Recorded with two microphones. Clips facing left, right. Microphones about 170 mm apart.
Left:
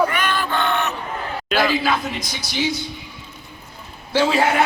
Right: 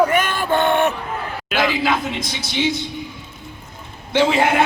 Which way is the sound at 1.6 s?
25° right (ahead or behind).